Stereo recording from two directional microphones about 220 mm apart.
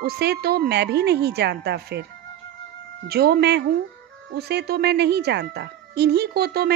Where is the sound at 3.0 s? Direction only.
45° right (ahead or behind).